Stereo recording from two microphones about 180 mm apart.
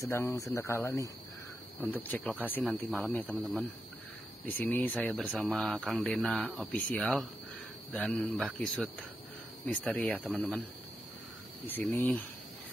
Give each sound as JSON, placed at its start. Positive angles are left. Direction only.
{"t": 0.0, "sound": "speech", "side_deg": 15}
{"t": 10.3, "sound": "speech", "side_deg": -5}
{"t": 11.6, "sound": "speech", "side_deg": 10}